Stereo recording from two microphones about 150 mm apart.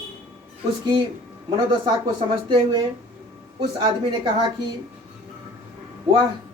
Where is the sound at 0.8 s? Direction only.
30° right (ahead or behind).